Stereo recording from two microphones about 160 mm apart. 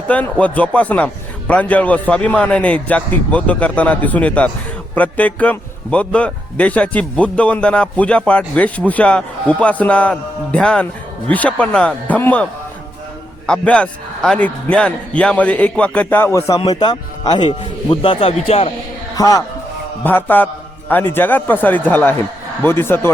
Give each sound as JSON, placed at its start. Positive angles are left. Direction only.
{"t": 0.1, "sound": "a man's voice", "side_deg": 10}
{"t": 13.5, "sound": "a man's voice", "side_deg": 5}
{"t": 16.6, "sound": "speech", "side_deg": 30}
{"t": 19.1, "sound": "speech", "side_deg": 20}
{"t": 20.1, "sound": "a man's voice", "side_deg": 10}